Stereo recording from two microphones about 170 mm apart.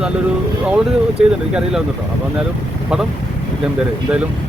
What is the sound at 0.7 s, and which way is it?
Speech, 5° right (ahead or behind).